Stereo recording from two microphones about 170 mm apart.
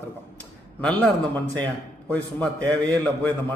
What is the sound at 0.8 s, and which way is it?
A man's voice, 5° left (ahead or behind).